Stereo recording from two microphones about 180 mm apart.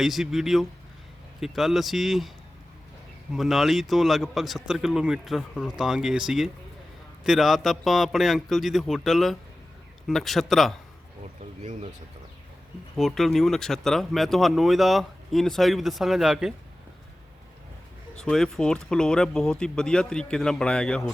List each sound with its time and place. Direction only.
0.0 s speech: centre (ahead or behind)
3.3 s speech: centre (ahead or behind)
11.6 s speech: 40° right (ahead or behind)
13.0 s speech: centre (ahead or behind)
18.2 s speech: centre (ahead or behind)